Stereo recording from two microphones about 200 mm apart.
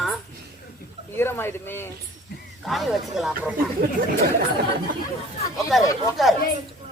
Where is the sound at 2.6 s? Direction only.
Centre (ahead or behind).